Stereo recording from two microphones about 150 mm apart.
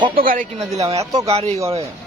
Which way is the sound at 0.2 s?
65° right (ahead or behind).